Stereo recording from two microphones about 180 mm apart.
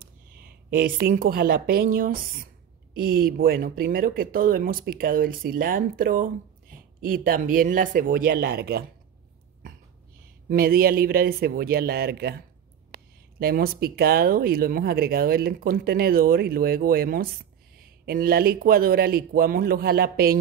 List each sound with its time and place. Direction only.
0.0 s a woman's voice: 55° right (ahead or behind)
10.5 s speech: 55° right (ahead or behind)
13.4 s speech: 55° right (ahead or behind)